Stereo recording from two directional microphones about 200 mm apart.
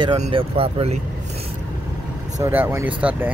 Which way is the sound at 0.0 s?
30° right (ahead or behind).